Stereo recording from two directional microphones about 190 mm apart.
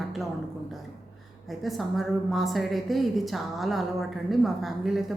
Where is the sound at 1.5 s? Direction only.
Centre (ahead or behind).